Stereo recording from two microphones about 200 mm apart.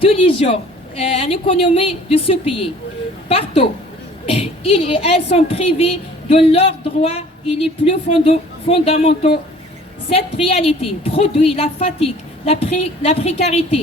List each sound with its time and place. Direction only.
0.0 s a woman's voice: 30° left (ahead or behind)